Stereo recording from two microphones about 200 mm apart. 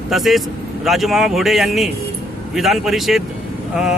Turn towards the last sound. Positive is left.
turn(degrees=-5)  # may be behind; listen again after turning